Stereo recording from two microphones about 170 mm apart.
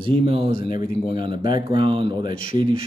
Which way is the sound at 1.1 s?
30° right (ahead or behind).